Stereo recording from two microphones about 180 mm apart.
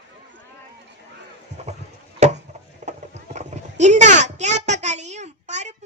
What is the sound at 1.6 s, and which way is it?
Chop, 35° right (ahead or behind).